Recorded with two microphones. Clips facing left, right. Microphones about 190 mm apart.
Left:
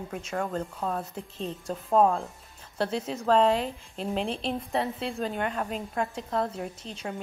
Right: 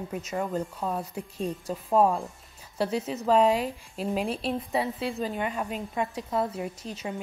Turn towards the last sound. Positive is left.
turn(degrees=-5)  # may be behind; listen again after turning